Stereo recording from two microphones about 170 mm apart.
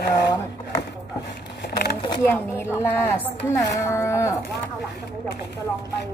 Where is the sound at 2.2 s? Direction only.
10° left (ahead or behind).